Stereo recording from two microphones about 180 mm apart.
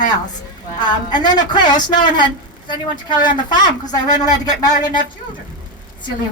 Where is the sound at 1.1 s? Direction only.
25° left (ahead or behind).